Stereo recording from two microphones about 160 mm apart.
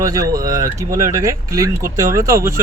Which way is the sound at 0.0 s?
20° right (ahead or behind).